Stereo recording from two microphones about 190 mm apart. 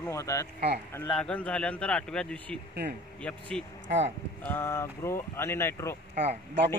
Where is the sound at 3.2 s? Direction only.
5° left (ahead or behind).